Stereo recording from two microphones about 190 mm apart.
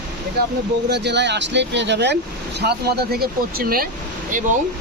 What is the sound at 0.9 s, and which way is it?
Speech, 60° right (ahead or behind).